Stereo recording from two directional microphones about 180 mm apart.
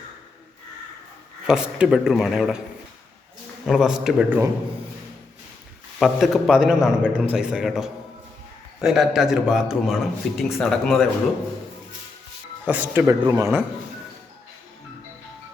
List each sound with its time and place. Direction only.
1.5 s a man's voice: 5° right (ahead or behind)
3.7 s a man's voice: centre (ahead or behind)
6.0 s a man's voice: centre (ahead or behind)
12.6 s speech: 10° right (ahead or behind)
13.2 s a man's voice: 20° right (ahead or behind)